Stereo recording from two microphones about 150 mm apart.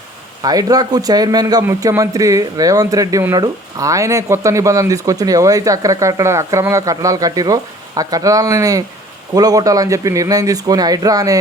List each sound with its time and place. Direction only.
0.4 s speech: 25° right (ahead or behind)